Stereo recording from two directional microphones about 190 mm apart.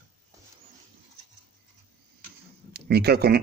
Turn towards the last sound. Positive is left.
turn(degrees=-55)  # may be behind; listen again after turning